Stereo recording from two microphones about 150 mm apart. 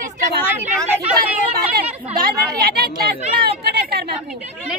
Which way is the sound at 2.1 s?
80° right.